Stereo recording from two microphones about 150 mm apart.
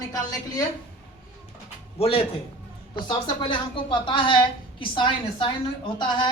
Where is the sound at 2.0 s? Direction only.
40° left (ahead or behind).